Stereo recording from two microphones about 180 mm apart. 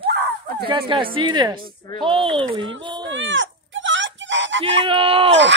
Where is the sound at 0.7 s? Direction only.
25° right (ahead or behind).